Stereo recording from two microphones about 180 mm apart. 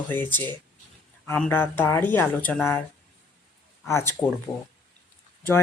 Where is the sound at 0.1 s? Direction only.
10° left (ahead or behind).